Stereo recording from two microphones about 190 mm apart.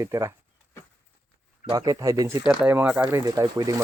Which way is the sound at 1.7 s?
20° right (ahead or behind).